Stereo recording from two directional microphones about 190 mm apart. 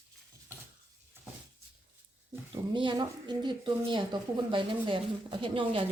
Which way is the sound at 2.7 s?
25° right (ahead or behind).